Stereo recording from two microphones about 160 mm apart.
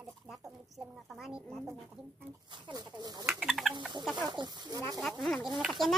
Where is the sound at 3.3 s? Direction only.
Centre (ahead or behind).